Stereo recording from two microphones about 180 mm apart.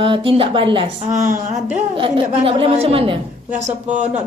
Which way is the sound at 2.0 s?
30° right (ahead or behind).